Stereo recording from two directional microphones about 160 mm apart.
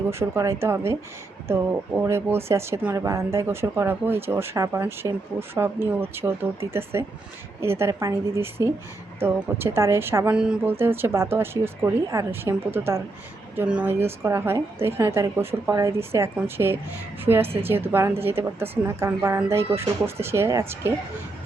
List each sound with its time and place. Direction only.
0.1 s speech: 15° right (ahead or behind)